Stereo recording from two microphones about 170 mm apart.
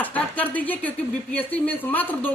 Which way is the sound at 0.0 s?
10° left (ahead or behind).